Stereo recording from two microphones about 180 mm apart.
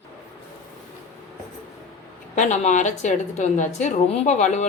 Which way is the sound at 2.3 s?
45° left (ahead or behind).